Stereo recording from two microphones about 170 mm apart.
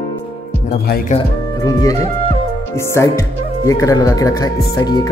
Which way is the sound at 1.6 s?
20° left (ahead or behind).